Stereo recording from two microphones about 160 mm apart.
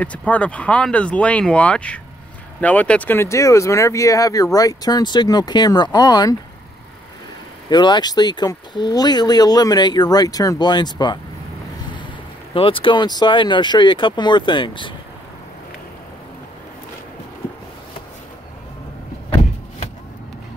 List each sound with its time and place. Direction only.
0.0 s speech: 10° left (ahead or behind); by 6.3 s 25° left (ahead or behind)
7.7 s speech: 25° left (ahead or behind)
12.5 s speech: 35° left (ahead or behind)